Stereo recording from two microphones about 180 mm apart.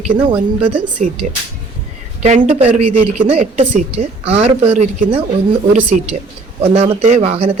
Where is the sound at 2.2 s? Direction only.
40° right (ahead or behind).